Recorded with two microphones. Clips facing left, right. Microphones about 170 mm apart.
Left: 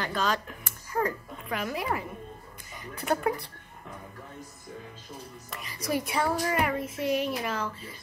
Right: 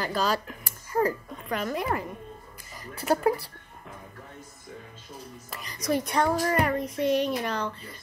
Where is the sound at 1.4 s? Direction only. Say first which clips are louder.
Right 2 dB; 5° left (ahead or behind).